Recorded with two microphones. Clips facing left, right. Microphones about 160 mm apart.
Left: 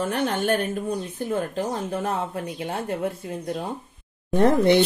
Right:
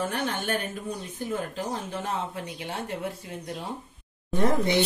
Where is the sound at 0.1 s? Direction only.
60° left (ahead or behind).